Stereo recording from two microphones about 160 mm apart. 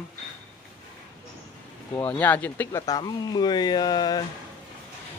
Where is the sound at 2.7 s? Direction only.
20° left (ahead or behind).